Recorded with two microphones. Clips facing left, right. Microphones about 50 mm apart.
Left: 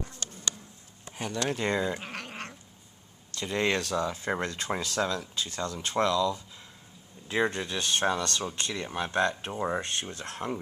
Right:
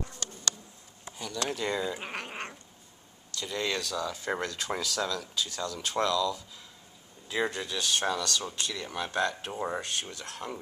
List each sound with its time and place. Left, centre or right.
1.1 s speech: left
2.0 s cat: centre
3.3 s speech: left
9.5 s speech: centre
9.8 s speech: left